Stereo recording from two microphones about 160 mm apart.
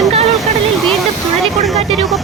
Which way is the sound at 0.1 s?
45° right (ahead or behind).